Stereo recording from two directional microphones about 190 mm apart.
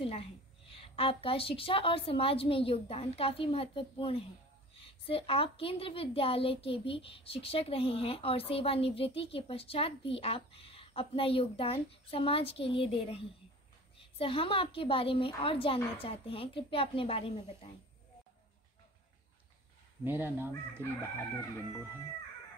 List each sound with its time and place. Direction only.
0.0 s a woman's voice: 30° left (ahead or behind)
20.0 s speech: 10° right (ahead or behind)